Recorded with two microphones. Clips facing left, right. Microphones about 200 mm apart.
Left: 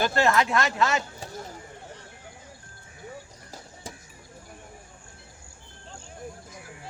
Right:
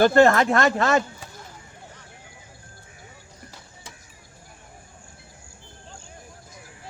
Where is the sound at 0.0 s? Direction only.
50° right (ahead or behind).